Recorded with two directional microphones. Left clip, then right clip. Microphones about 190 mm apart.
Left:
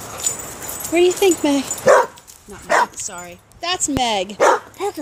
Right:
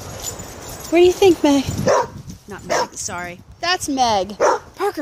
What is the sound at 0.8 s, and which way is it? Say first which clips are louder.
Speech: right 2 dB; 10° right (ahead or behind).